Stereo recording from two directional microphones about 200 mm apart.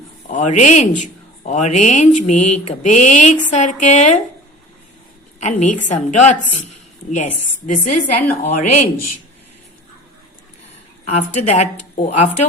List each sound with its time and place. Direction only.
0.3 s speech: 40° left (ahead or behind)
5.4 s a woman's voice: 35° left (ahead or behind)
7.7 s speech: 40° left (ahead or behind)
11.0 s speech: 35° left (ahead or behind)